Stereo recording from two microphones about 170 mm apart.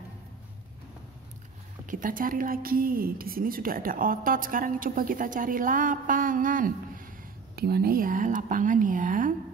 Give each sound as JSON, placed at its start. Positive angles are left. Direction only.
{"t": 1.9, "sound": "a woman's voice", "side_deg": -50}
{"t": 7.5, "sound": "a woman's voice", "side_deg": -65}